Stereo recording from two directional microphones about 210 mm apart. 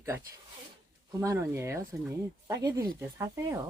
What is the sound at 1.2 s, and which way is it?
Speech, 15° right (ahead or behind).